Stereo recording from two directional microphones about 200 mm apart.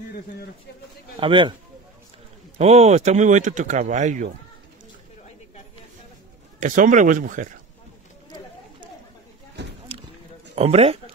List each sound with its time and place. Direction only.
1.2 s speech: 25° right (ahead or behind)
2.6 s speech: 30° right (ahead or behind)
6.6 s speech: 40° right (ahead or behind)
10.5 s speech: 30° right (ahead or behind)